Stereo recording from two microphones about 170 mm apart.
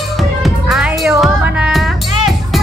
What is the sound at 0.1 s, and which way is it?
Music, centre (ahead or behind).